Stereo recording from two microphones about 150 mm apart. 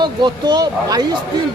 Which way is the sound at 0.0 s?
30° right (ahead or behind).